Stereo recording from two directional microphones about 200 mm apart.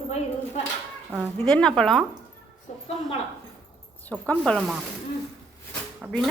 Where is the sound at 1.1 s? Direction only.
10° right (ahead or behind).